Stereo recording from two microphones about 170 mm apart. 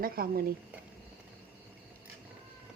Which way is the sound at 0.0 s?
60° right (ahead or behind).